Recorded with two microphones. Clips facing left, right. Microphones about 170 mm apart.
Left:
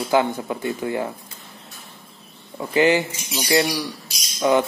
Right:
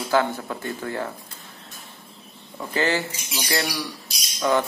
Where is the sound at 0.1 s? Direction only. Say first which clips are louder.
Left 2 dB; 15° left (ahead or behind).